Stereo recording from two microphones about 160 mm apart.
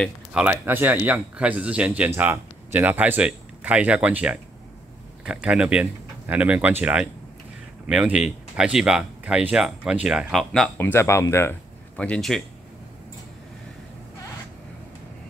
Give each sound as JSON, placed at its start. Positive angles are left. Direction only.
{"t": 0.3, "sound": "speech", "side_deg": -10}
{"t": 10.9, "sound": "speech", "side_deg": 15}
{"t": 12.0, "sound": "speech", "side_deg": 5}